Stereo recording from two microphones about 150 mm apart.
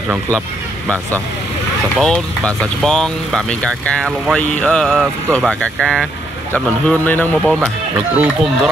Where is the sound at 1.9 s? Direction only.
Centre (ahead or behind).